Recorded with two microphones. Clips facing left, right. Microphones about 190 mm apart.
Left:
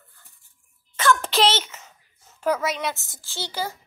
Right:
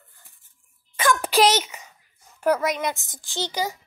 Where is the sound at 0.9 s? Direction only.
15° right (ahead or behind).